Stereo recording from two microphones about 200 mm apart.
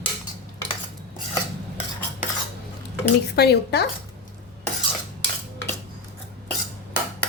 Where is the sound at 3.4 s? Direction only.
55° left (ahead or behind).